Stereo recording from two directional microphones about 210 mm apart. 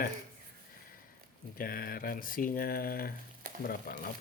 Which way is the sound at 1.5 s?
45° left (ahead or behind).